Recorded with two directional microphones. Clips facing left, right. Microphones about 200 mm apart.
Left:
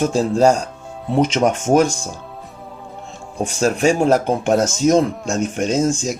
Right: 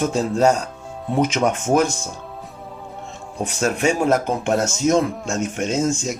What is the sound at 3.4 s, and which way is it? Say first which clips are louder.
Speech: left 4 dB; 30° left (ahead or behind).